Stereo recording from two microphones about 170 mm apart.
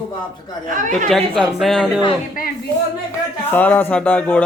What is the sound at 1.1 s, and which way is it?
Speech, centre (ahead or behind).